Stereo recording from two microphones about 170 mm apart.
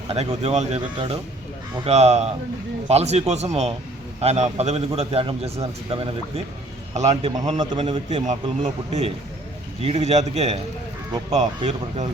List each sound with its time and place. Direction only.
0.1 s a man's voice: 35° right (ahead or behind)
8.3 s a man's voice: 40° right (ahead or behind)